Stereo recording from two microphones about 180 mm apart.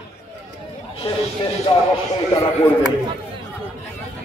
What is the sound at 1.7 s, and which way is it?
Speech, 30° left (ahead or behind).